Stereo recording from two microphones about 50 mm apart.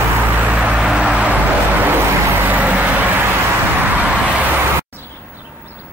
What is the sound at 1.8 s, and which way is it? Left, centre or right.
Vehicle, right.